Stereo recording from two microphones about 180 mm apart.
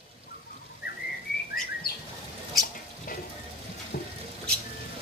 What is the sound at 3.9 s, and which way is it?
Water, 55° left (ahead or behind).